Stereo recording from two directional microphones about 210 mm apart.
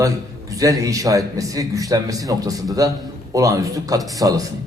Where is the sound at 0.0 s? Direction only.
15° right (ahead or behind).